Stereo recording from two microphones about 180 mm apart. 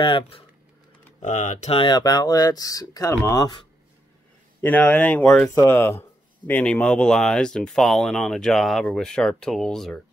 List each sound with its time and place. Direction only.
0.0 s speech: 30° left (ahead or behind)
1.2 s speech: 45° left (ahead or behind); by 3.6 s 20° left (ahead or behind)
4.6 s speech: 10° left (ahead or behind)
5.5 s speech: 15° left (ahead or behind)